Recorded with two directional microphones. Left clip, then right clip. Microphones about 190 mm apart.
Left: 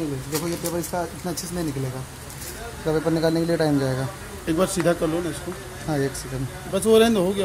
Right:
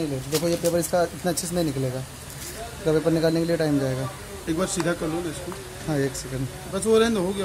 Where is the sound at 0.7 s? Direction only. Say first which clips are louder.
Right 5 dB; 35° right (ahead or behind).